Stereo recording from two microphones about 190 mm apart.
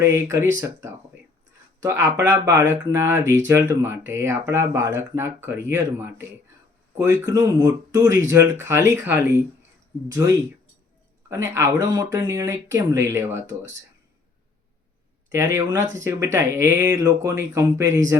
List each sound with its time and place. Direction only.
0.0 s speech: 15° right (ahead or behind)
2.0 s speech: 15° right (ahead or behind)
11.3 s speech: 15° right (ahead or behind)
15.5 s speech: 15° right (ahead or behind)